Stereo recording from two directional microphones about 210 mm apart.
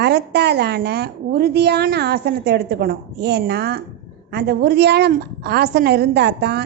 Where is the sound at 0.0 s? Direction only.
50° right (ahead or behind).